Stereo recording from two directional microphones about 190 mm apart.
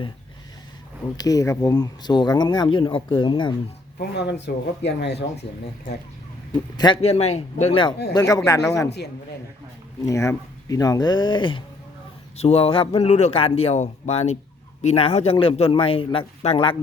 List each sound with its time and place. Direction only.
1.1 s speech: 20° left (ahead or behind)
4.1 s speech: 65° left (ahead or behind)
6.7 s a man's voice: 25° left (ahead or behind)
8.1 s speech: 15° left (ahead or behind)
10.1 s a man's voice: 15° left (ahead or behind)